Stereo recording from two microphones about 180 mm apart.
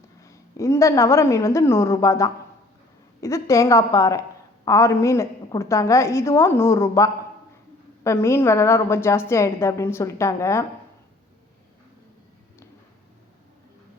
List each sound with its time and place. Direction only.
0.2 s a woman's voice: 15° left (ahead or behind)